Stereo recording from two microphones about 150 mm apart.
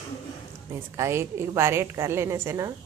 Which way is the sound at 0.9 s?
20° right (ahead or behind).